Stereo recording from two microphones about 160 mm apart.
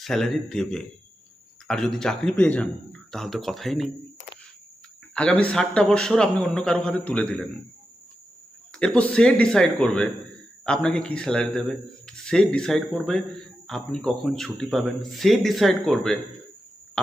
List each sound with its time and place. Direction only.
0.0 s a man's voice: centre (ahead or behind)
5.1 s a man's voice: 5° left (ahead or behind)
8.8 s a man's voice: 5° left (ahead or behind)